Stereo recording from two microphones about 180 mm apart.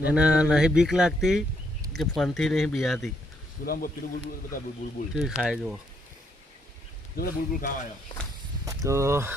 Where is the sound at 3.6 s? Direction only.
55° left (ahead or behind).